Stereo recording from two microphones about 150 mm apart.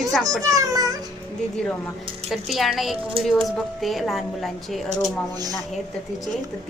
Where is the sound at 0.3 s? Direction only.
25° right (ahead or behind).